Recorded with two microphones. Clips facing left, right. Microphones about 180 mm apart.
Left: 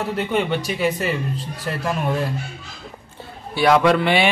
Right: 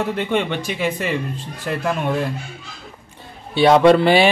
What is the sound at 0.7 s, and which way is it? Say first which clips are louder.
Speech: left 1 dB; 40° left (ahead or behind).